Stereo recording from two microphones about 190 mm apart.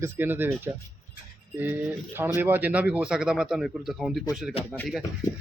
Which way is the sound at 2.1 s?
10° right (ahead or behind).